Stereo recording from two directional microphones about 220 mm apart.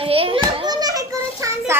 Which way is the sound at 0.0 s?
25° right (ahead or behind).